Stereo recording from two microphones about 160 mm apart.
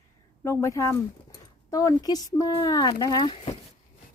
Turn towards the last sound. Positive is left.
turn(degrees=25)  # may be behind; listen again after turning